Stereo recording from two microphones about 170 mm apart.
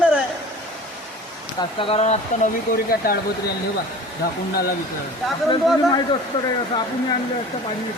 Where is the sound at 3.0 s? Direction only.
60° left (ahead or behind).